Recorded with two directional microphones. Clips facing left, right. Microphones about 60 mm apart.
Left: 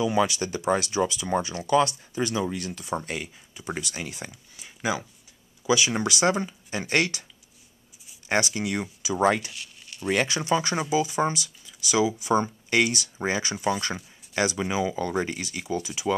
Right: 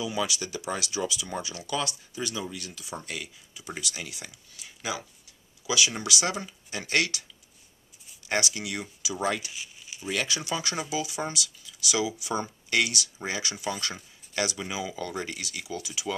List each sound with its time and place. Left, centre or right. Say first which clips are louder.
0.0 s speech: left 7 dB; left
8.3 s speech: left 4 dB; left
9.5 s a sound: even; centre
10.1 s speech: left 6 dB; left